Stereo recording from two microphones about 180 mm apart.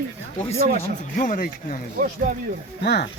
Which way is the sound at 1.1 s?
50° left (ahead or behind).